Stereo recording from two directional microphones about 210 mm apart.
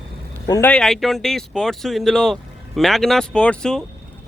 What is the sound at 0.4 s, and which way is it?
Speech, 15° left (ahead or behind).